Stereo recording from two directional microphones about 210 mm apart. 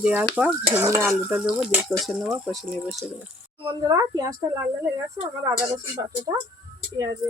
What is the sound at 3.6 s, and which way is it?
Speech, 15° right (ahead or behind).